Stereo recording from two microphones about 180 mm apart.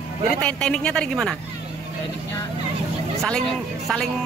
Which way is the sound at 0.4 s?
5° left (ahead or behind).